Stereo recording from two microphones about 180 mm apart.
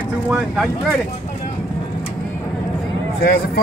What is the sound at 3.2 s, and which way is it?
Speech, 60° left (ahead or behind).